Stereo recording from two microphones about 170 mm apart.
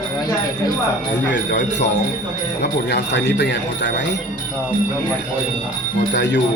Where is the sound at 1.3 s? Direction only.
90° left.